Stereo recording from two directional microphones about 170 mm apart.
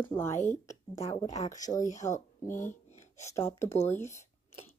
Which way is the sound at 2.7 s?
45° left (ahead or behind).